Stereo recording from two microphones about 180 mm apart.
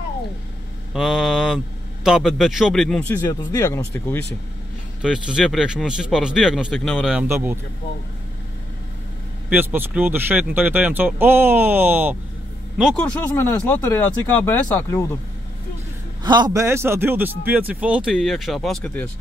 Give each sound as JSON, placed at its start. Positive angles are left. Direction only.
{"t": 0.9, "sound": "speech", "side_deg": 0}
{"t": 3.3, "sound": "speech", "side_deg": 20}
{"t": 5.0, "sound": "speech", "side_deg": -5}
{"t": 7.2, "sound": "speech", "side_deg": -15}
{"t": 9.5, "sound": "speech", "side_deg": -10}
{"t": 12.9, "sound": "speech", "side_deg": 5}
{"t": 16.3, "sound": "speech", "side_deg": -25}